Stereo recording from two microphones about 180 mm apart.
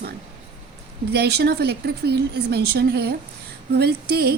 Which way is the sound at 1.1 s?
65° right (ahead or behind).